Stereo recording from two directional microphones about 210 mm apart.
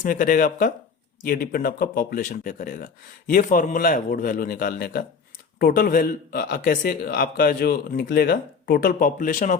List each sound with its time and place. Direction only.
0.0 s a man's voice: 40° left (ahead or behind)